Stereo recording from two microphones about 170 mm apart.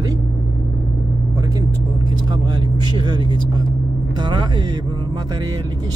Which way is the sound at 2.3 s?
25° right (ahead or behind).